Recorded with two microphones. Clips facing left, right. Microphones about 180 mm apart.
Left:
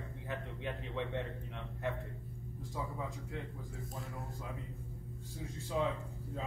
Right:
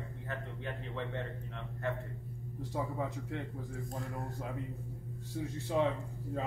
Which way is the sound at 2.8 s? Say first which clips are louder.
Right 5 dB; 65° right (ahead or behind).